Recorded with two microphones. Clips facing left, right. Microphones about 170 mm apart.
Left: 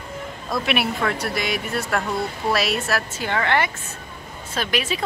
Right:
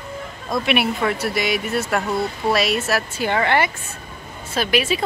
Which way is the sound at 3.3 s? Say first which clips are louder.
Right 2 dB; 15° right (ahead or behind).